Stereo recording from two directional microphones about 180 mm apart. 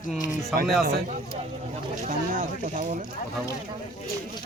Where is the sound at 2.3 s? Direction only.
45° right (ahead or behind).